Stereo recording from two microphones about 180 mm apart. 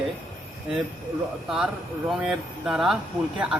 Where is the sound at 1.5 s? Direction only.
Centre (ahead or behind).